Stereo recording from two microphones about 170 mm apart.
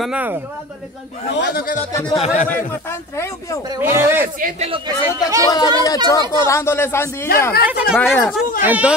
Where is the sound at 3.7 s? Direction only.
15° right (ahead or behind).